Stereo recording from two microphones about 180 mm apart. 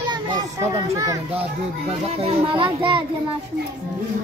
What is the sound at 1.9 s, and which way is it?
A child's voice, 35° right (ahead or behind).